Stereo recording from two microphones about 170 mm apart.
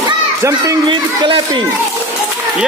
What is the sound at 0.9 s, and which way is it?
Speech, 30° right (ahead or behind).